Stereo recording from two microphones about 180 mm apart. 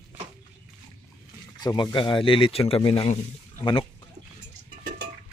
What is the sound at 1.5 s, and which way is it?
A man's voice, 25° left (ahead or behind).